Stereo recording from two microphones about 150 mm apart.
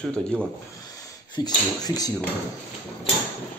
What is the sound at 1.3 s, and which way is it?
Speech, 25° left (ahead or behind).